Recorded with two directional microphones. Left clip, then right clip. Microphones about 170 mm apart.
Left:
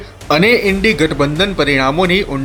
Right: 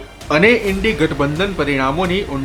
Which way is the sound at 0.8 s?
10° left (ahead or behind).